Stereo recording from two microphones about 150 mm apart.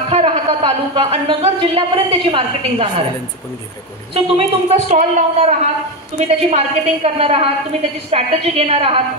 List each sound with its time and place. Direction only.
0.1 s speech: 35° right (ahead or behind)
4.1 s speech: 40° right (ahead or behind)